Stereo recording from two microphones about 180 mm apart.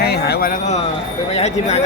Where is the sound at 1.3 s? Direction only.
35° left (ahead or behind).